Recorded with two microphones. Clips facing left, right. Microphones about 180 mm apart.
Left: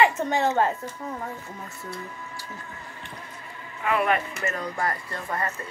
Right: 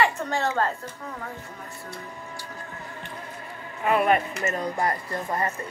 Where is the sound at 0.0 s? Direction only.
20° left (ahead or behind).